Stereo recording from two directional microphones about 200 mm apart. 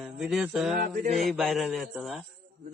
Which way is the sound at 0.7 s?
40° right (ahead or behind).